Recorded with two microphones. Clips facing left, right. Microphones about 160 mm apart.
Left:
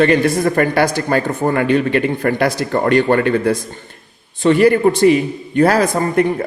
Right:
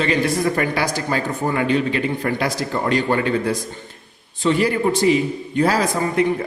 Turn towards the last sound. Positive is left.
turn(degrees=55)  # may be behind; listen again after turning